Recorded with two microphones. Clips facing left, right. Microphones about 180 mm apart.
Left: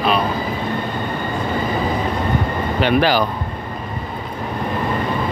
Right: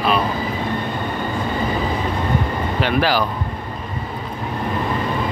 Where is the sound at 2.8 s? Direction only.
Centre (ahead or behind).